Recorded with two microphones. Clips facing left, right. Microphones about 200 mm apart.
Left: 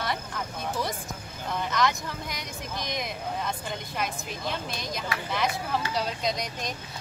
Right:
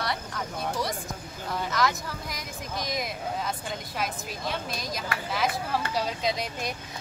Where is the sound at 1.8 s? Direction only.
5° right (ahead or behind).